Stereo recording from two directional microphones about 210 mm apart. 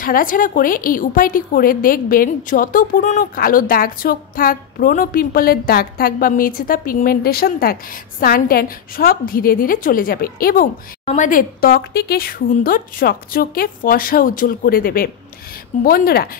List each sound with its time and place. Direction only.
0.0 s a woman's voice: 40° left (ahead or behind)